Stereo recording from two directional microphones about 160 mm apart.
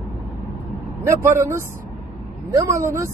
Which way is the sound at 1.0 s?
20° right (ahead or behind).